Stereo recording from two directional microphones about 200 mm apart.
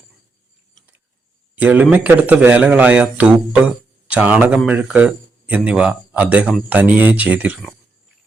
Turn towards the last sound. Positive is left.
turn(degrees=-10)  # may be behind; listen again after turning